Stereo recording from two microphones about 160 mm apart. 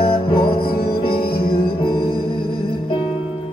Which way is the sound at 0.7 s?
70° left (ahead or behind).